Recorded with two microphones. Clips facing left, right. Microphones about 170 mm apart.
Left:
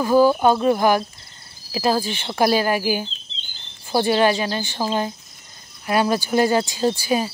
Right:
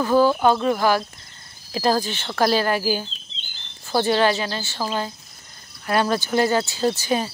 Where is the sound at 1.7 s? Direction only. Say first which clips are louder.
Even; 10° left (ahead or behind).